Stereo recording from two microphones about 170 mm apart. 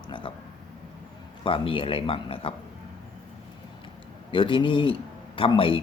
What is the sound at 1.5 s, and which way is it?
A man's voice, 30° left (ahead or behind).